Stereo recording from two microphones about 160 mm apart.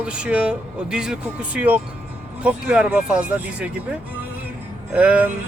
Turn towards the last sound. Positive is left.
turn(degrees=-10)  # may be behind; listen again after turning